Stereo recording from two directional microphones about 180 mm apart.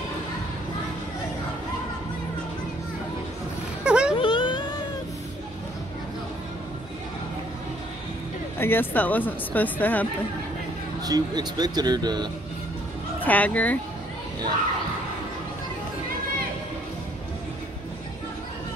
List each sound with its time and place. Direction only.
3.8 s vehicle: 5° right (ahead or behind)
4.2 s a sound: 25° left (ahead or behind)
8.5 s speech: 10° left (ahead or behind)
11.1 s speech: 20° right (ahead or behind)
13.2 s speech: 10° left (ahead or behind)